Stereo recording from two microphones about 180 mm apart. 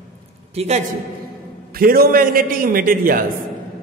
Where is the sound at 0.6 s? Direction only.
35° right (ahead or behind).